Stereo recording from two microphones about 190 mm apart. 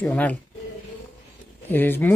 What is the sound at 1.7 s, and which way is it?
Speech, 10° left (ahead or behind).